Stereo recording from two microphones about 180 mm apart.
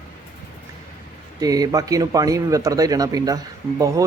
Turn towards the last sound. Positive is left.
turn(degrees=-20)  # may be behind; listen again after turning